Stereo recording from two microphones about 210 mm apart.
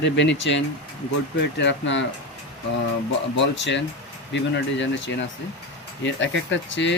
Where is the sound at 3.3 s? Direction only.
60° left (ahead or behind).